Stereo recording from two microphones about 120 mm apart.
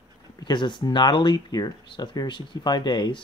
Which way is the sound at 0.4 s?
40° left (ahead or behind).